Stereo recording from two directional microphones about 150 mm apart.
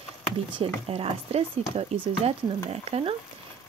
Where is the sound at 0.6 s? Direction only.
40° right (ahead or behind).